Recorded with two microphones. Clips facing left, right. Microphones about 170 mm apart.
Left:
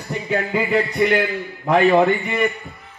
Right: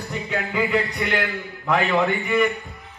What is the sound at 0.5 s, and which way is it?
Speech, 20° left (ahead or behind).